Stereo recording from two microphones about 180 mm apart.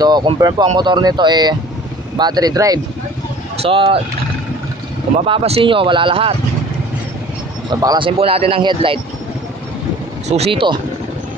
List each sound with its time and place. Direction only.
0.0 s speech: 25° right (ahead or behind)
3.6 s speech: 30° right (ahead or behind)
5.1 s speech: 30° right (ahead or behind)
7.8 s speech: 25° right (ahead or behind)
10.2 s speech: 35° right (ahead or behind)